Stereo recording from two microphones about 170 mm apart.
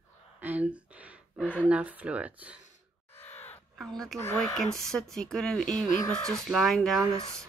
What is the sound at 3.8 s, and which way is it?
Speech, centre (ahead or behind).